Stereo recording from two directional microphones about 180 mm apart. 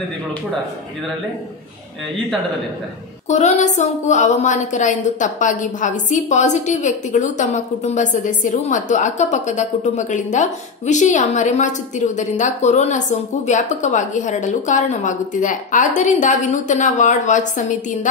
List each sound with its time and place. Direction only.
3.3 s a woman's voice: 40° left (ahead or behind)